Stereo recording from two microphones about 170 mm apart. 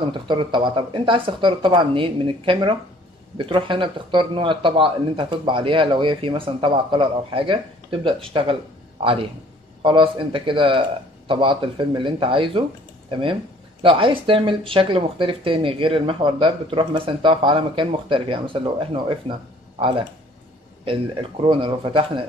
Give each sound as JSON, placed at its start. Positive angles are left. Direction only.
{"t": 0.1, "sound": "speech", "side_deg": -30}
{"t": 9.8, "sound": "speech", "side_deg": -30}